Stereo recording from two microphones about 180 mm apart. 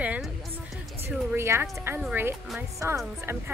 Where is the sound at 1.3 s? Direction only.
15° right (ahead or behind).